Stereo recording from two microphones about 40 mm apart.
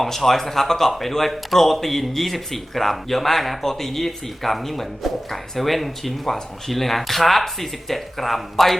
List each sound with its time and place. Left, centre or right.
0.0 s speech: centre